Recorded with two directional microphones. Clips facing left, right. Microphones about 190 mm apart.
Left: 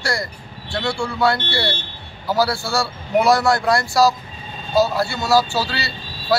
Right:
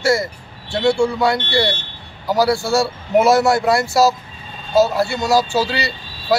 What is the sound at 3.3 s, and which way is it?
Speech, centre (ahead or behind).